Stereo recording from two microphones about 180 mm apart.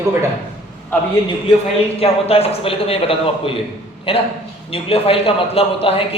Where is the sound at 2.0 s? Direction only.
35° left (ahead or behind).